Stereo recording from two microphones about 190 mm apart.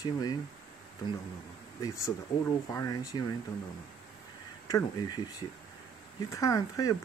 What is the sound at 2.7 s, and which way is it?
Speech, 20° left (ahead or behind).